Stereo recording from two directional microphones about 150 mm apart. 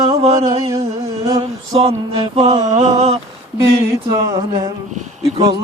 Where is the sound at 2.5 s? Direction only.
40° right (ahead or behind).